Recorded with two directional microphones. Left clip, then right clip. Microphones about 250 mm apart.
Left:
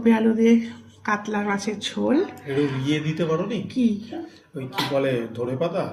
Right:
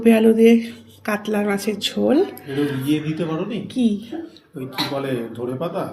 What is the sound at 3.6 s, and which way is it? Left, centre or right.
Speech, centre.